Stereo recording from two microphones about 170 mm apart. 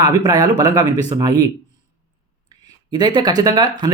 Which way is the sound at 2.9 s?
25° right (ahead or behind).